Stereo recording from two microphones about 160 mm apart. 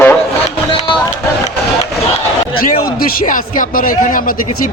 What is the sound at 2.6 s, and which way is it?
A man's voice, 60° left (ahead or behind).